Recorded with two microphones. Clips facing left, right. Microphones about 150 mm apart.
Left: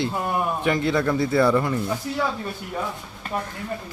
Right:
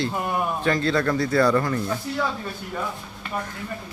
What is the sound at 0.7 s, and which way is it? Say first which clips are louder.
Speech: even; 20° left (ahead or behind).